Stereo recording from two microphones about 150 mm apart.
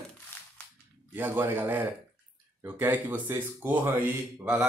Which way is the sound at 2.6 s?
15° right (ahead or behind).